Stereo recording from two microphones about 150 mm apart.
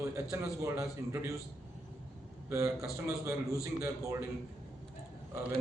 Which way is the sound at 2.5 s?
15° right (ahead or behind).